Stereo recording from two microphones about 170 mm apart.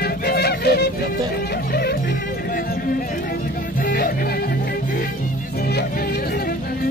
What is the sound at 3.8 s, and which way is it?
Music, 70° left (ahead or behind).